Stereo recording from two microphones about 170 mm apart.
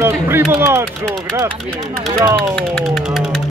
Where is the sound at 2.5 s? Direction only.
Centre (ahead or behind).